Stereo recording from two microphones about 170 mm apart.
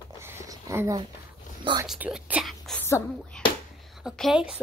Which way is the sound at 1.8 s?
5° right (ahead or behind).